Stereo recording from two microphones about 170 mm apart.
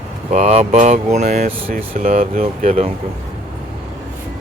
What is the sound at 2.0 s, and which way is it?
Speech, 50° right (ahead or behind).